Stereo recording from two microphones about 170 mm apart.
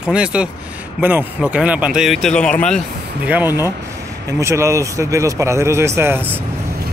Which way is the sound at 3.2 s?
10° right (ahead or behind).